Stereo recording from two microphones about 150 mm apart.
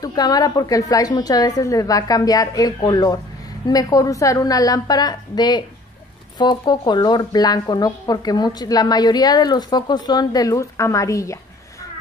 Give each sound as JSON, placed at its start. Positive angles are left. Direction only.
{"t": 0.0, "sound": "speech", "side_deg": 25}